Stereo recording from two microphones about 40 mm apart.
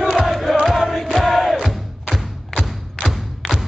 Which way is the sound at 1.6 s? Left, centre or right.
Centre.